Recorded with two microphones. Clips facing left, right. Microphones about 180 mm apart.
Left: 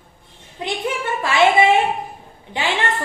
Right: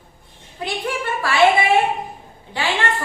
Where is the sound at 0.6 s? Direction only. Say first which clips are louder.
Left 1 dB; 20° left (ahead or behind).